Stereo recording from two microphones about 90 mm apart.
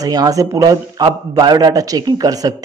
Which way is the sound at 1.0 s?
50° right (ahead or behind).